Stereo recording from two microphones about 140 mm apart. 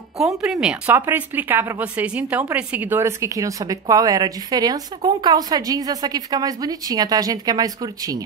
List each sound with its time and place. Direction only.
0.2 s speech: centre (ahead or behind); by 8.2 s 25° right (ahead or behind)